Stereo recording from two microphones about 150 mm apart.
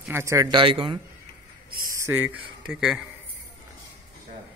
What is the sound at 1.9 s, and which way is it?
A man's voice, 15° right (ahead or behind).